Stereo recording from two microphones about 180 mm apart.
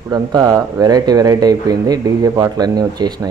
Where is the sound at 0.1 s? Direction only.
20° right (ahead or behind).